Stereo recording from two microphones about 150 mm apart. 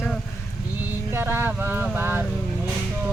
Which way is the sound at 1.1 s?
15° right (ahead or behind).